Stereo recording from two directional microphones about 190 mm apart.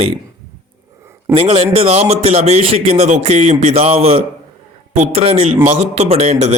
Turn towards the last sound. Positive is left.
turn(degrees=-35)  # may be behind; listen again after turning